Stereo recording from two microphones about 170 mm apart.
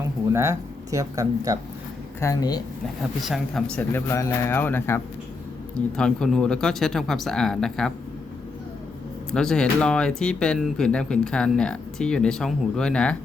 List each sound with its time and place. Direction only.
0.3 s speech: 15° right (ahead or behind)
2.2 s speech: 20° left (ahead or behind)
3.0 s speech: centre (ahead or behind)
6.0 s speech: 5° left (ahead or behind)
9.3 s speech: 5° left (ahead or behind)